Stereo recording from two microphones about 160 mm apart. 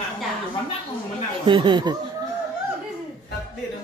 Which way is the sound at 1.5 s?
30° right (ahead or behind).